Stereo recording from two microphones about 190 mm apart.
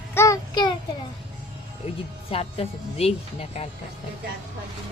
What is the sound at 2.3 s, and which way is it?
Speech, 30° left (ahead or behind).